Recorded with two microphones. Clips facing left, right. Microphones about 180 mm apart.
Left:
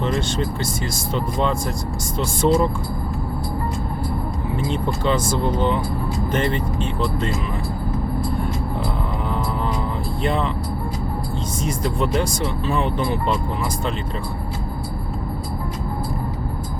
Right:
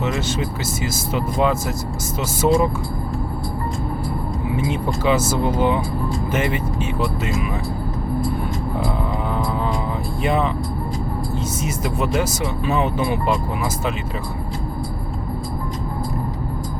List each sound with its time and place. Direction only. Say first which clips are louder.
0.0 s vehicle: even; 5° right (ahead or behind)
0.9 s speech: right 2 dB; 5° right (ahead or behind)
4.5 s speech: right 1 dB; 5° right (ahead or behind)
10.2 s speech: right 2 dB; 5° right (ahead or behind)
11.6 s speech: left 3 dB; 5° right (ahead or behind)